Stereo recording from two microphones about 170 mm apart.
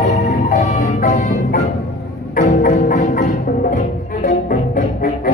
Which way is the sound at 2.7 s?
40° left (ahead or behind).